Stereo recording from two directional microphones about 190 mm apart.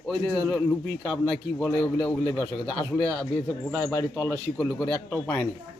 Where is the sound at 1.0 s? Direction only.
5° left (ahead or behind).